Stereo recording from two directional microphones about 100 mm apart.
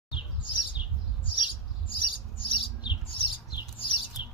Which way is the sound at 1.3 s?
55° left (ahead or behind).